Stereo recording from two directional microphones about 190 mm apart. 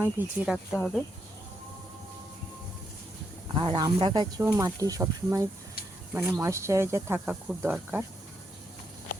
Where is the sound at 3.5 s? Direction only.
25° right (ahead or behind).